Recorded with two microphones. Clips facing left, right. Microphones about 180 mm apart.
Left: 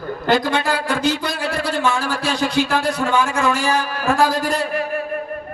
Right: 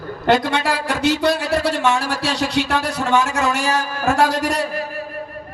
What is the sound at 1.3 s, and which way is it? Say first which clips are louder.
Speech: right 4 dB; 40° right (ahead or behind).